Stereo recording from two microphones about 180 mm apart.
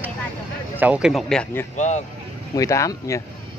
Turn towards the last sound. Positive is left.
turn(degrees=15)  # may be behind; listen again after turning